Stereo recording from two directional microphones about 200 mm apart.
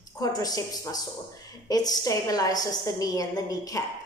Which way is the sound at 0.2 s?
20° left (ahead or behind).